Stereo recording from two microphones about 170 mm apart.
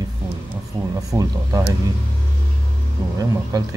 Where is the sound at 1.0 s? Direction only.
20° right (ahead or behind).